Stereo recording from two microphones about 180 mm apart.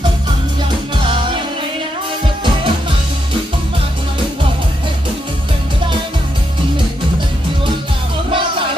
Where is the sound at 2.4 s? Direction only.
30° right (ahead or behind).